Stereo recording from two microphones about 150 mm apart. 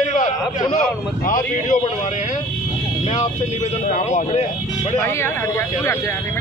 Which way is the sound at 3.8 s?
55° left (ahead or behind).